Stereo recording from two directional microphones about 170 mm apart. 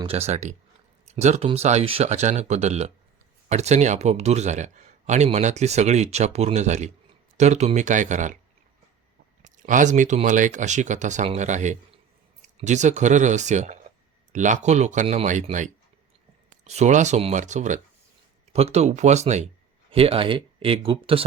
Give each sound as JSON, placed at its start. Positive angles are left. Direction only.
{"t": 0.0, "sound": "speech", "side_deg": -35}
{"t": 9.4, "sound": "speech", "side_deg": -50}
{"t": 16.5, "sound": "speech", "side_deg": -40}